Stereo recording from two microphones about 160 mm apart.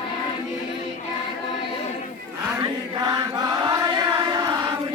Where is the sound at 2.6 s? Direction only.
25° right (ahead or behind).